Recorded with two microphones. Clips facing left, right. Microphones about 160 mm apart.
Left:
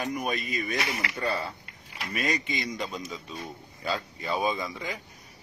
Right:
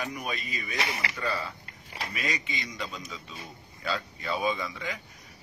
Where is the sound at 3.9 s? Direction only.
40° left (ahead or behind).